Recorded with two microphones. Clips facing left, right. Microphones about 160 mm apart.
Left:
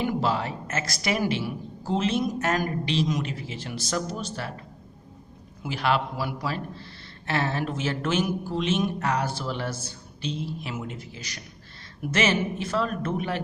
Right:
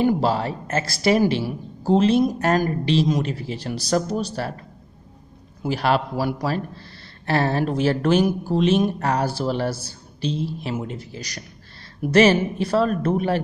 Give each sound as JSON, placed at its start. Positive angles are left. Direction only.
{"t": 0.0, "sound": "a man's voice", "side_deg": -35}
{"t": 5.6, "sound": "a man's voice", "side_deg": -40}